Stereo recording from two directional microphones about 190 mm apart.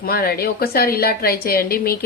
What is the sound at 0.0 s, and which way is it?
A woman's voice, 50° left (ahead or behind).